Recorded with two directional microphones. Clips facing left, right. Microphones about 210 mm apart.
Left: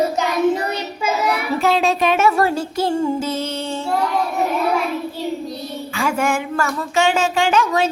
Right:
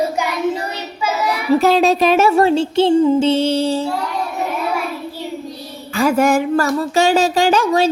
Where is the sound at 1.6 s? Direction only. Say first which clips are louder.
Right 2 dB; 40° right (ahead or behind).